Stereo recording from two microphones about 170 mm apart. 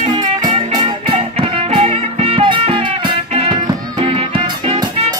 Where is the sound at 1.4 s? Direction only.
35° right (ahead or behind).